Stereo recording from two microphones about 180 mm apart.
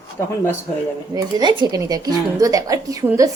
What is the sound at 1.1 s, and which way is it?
A woman's voice, 20° right (ahead or behind).